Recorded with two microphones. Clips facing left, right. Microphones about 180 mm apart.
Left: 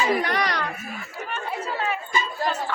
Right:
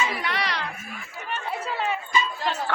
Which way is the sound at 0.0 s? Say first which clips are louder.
Left 5 dB; 40° left (ahead or behind).